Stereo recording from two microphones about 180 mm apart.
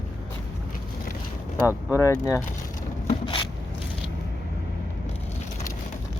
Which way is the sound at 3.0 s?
25° left (ahead or behind).